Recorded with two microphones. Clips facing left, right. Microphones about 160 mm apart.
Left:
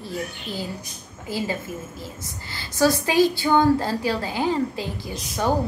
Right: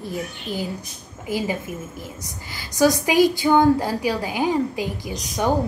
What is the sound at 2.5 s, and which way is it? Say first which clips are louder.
A woman's voice: right 2 dB; 15° right (ahead or behind).